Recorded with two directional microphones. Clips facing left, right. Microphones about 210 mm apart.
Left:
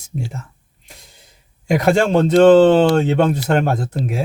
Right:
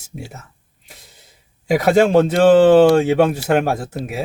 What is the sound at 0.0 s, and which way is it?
Speech, 5° right (ahead or behind).